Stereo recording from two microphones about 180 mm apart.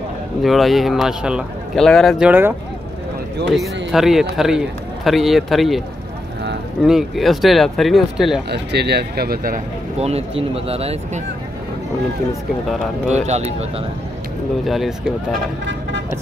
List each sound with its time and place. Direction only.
0.4 s a man's voice: centre (ahead or behind)
3.5 s a man's voice: centre (ahead or behind)
6.8 s a man's voice: centre (ahead or behind)
8.5 s speech: 65° right (ahead or behind)
9.9 s speech: 35° right (ahead or behind)
13.1 s speech: 35° right (ahead or behind)
14.7 s a man's voice: centre (ahead or behind)